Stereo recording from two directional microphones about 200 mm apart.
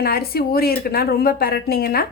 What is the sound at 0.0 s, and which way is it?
Speech, 50° left (ahead or behind).